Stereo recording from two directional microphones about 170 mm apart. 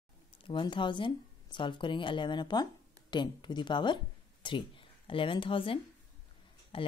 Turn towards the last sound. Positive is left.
turn(degrees=30)  # may be behind; listen again after turning